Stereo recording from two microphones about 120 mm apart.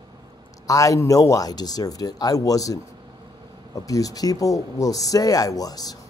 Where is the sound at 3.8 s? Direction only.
30° left (ahead or behind).